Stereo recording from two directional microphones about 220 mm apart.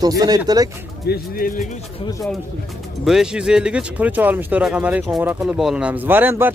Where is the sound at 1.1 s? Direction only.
40° left (ahead or behind).